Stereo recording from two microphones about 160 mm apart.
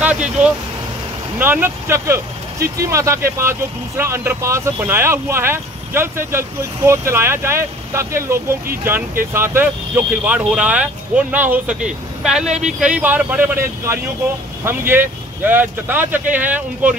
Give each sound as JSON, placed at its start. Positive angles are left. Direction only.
{"t": 0.0, "sound": "vehicle", "side_deg": -10}
{"t": 1.4, "sound": "speech", "side_deg": -15}
{"t": 12.4, "sound": "speech", "side_deg": -45}
{"t": 12.8, "sound": "speech", "side_deg": -10}